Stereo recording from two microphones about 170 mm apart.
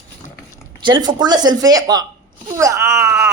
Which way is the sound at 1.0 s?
25° right (ahead or behind).